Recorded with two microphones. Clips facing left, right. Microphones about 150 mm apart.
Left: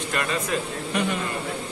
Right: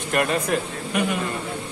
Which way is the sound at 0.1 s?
55° right (ahead or behind).